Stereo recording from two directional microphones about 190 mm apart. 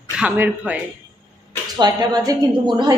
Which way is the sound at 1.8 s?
20° right (ahead or behind).